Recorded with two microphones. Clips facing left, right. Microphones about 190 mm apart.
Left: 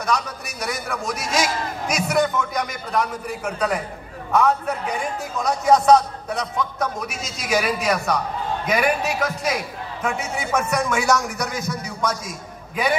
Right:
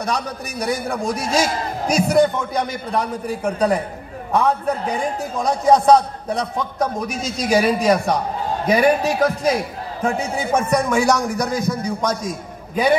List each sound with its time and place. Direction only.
0.0 s a man's voice: 35° right (ahead or behind)